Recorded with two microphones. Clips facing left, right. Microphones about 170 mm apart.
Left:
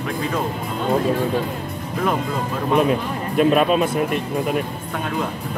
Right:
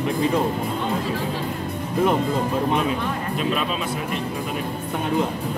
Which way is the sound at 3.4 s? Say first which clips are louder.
Left 11 dB; 50° left (ahead or behind).